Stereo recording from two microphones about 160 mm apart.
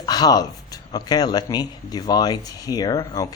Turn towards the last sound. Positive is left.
turn(degrees=20)  # may be behind; listen again after turning